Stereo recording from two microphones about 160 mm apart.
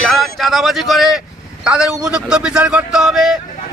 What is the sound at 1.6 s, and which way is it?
A man's voice, 5° right (ahead or behind).